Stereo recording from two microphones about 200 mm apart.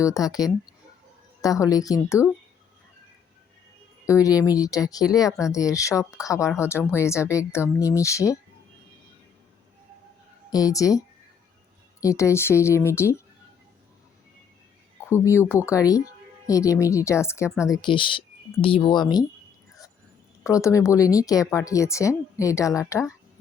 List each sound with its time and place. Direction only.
0.0 s a woman's voice: 15° left (ahead or behind)
4.0 s a woman's voice: 15° left (ahead or behind)
10.5 s a woman's voice: 15° left (ahead or behind)
15.1 s a woman's voice: 15° left (ahead or behind)
20.4 s a woman's voice: 15° left (ahead or behind)